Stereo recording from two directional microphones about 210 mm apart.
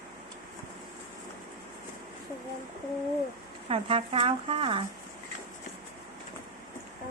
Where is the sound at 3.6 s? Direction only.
25° right (ahead or behind).